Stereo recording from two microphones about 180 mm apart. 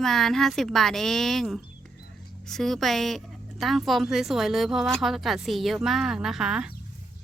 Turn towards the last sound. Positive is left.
turn(degrees=-5)  # may be behind; listen again after turning